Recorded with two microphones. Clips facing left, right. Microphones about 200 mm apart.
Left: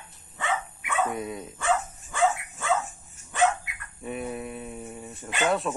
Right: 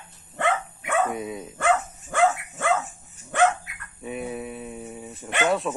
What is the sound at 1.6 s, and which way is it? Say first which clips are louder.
Dog: right 4 dB; 65° right (ahead or behind).